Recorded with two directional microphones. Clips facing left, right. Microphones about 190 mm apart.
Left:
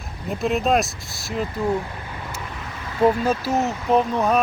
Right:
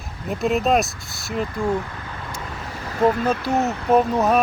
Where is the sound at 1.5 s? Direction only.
20° left (ahead or behind).